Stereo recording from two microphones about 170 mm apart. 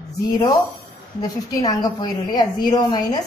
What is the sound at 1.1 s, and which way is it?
A woman's voice, 20° left (ahead or behind).